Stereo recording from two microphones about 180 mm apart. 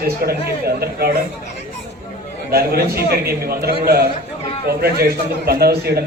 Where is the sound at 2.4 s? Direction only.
60° right (ahead or behind).